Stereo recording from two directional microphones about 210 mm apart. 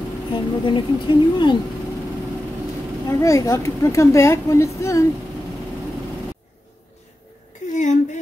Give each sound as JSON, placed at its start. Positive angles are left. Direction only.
{"t": 0.3, "sound": "speech", "side_deg": 25}
{"t": 3.1, "sound": "a woman's voice", "side_deg": 15}
{"t": 7.6, "sound": "a sound", "side_deg": 35}